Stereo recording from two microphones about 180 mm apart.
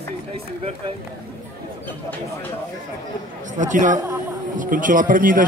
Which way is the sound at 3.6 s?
45° right (ahead or behind).